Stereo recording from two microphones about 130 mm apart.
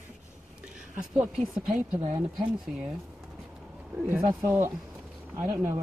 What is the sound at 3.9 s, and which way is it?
Speech, 10° right (ahead or behind).